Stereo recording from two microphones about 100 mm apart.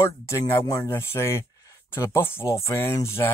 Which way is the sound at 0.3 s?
25° left (ahead or behind).